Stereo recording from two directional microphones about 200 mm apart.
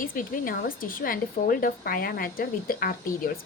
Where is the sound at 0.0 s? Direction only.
45° left (ahead or behind).